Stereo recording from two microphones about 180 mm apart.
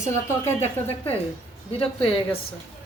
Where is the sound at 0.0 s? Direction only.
40° left (ahead or behind).